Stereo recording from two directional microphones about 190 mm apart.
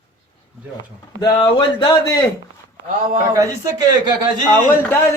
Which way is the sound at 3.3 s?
20° right (ahead or behind).